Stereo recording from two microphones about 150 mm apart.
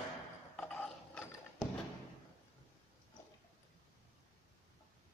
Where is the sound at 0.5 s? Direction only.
5° left (ahead or behind).